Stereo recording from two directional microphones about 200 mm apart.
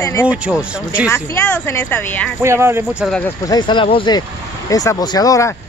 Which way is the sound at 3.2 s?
15° left (ahead or behind).